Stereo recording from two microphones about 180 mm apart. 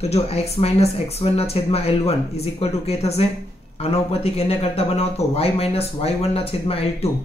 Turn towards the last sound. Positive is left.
turn(degrees=35)  # may be behind; listen again after turning